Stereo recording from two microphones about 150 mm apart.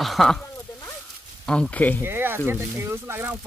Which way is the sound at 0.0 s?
Centre (ahead or behind).